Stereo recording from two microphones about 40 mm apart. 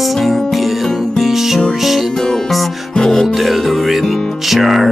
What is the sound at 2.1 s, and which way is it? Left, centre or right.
Music, centre.